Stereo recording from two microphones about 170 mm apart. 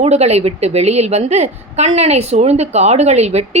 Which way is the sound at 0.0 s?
40° right (ahead or behind).